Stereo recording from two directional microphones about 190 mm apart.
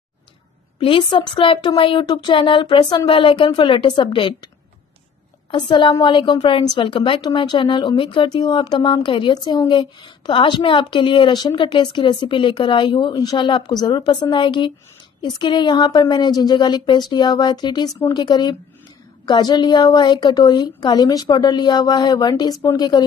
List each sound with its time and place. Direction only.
0.7 s a woman's voice: 25° left (ahead or behind)
5.5 s a woman's voice: 25° left (ahead or behind)